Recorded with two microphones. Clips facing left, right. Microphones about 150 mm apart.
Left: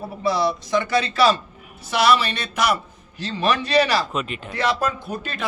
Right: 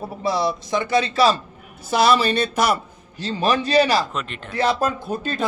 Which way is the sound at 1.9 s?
35° right (ahead or behind).